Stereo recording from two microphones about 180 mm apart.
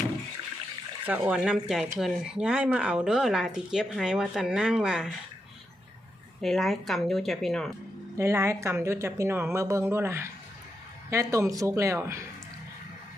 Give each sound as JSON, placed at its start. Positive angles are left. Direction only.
{"t": 1.0, "sound": "speech", "side_deg": -10}
{"t": 6.4, "sound": "speech", "side_deg": 0}
{"t": 8.1, "sound": "a woman's voice", "side_deg": -15}